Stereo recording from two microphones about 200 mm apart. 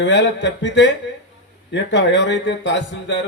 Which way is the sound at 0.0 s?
65° left (ahead or behind).